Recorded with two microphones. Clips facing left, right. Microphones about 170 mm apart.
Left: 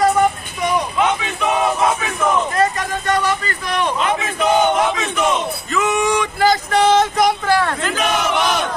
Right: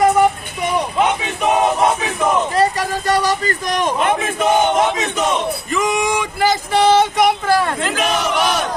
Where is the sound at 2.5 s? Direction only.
35° right (ahead or behind); by 4.3 s 50° right (ahead or behind).